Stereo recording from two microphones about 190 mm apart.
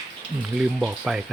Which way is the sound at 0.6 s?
5° right (ahead or behind).